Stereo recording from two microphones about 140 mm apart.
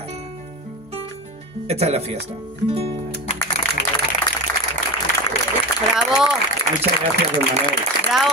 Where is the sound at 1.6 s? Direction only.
45° right (ahead or behind).